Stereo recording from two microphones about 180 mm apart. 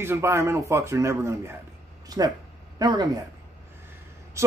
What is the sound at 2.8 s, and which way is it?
Speech, 20° right (ahead or behind).